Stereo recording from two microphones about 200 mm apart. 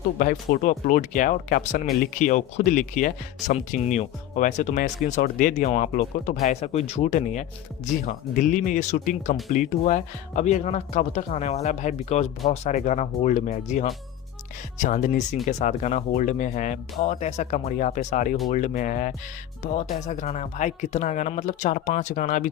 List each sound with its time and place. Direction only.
0.2 s speech: 45° left (ahead or behind)